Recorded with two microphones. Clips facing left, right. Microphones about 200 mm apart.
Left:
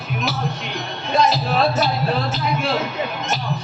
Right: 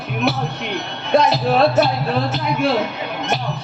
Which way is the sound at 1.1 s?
60° right (ahead or behind).